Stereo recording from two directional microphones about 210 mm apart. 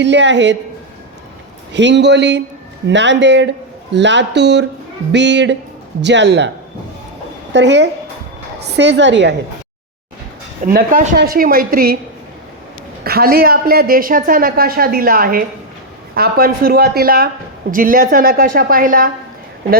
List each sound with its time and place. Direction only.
0.0 s a woman's voice: 60° right (ahead or behind)
1.7 s a woman's voice: 55° right (ahead or behind)
7.5 s a woman's voice: 55° right (ahead or behind)
10.7 s a man's voice: 40° right (ahead or behind)
13.1 s a man's voice: 45° right (ahead or behind)